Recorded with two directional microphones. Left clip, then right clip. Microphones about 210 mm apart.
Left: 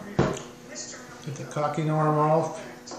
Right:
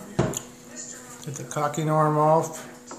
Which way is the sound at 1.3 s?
15° right (ahead or behind).